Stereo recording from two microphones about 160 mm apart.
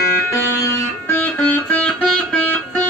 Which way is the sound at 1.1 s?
10° left (ahead or behind).